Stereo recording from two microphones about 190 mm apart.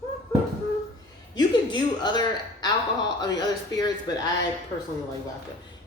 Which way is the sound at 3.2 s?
20° left (ahead or behind).